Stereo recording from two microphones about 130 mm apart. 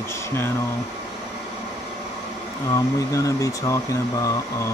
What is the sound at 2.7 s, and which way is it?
Speech, 25° left (ahead or behind).